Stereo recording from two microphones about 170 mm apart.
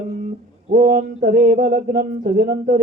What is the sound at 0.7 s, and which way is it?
Speech, 50° right (ahead or behind).